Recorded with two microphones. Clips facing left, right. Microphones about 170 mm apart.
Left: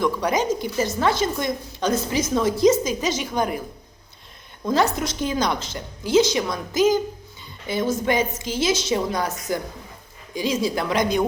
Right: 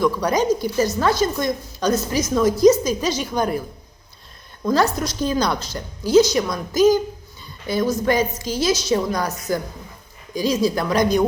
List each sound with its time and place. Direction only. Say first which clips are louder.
0.3 s a woman's voice: right 3 dB; 20° left (ahead or behind)
4.6 s a woman's voice: right 2 dB; 20° left (ahead or behind)
10.3 s a woman's voice: right 3 dB; 20° left (ahead or behind)